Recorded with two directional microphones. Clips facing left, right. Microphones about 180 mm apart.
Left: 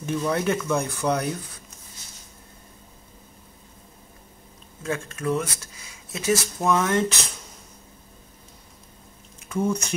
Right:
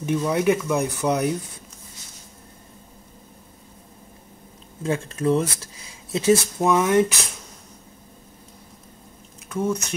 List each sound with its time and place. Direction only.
0.0 s speech: 15° right (ahead or behind)
4.8 s speech: 30° right (ahead or behind)
6.6 s speech: 15° right (ahead or behind)
9.5 s speech: 5° right (ahead or behind)